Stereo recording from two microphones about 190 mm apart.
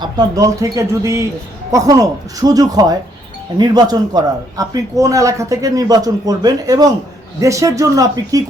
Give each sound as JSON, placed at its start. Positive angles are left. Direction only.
{"t": 0.0, "sound": "a man's voice", "side_deg": -20}